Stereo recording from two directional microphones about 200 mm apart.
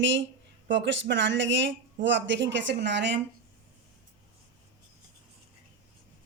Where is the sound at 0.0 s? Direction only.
65° right (ahead or behind).